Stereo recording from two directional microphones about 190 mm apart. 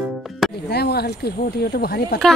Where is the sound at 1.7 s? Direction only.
55° left (ahead or behind).